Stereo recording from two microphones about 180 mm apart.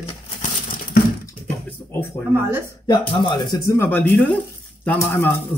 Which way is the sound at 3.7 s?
10° left (ahead or behind).